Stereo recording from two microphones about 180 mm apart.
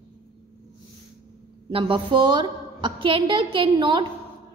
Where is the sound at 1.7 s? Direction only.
30° right (ahead or behind).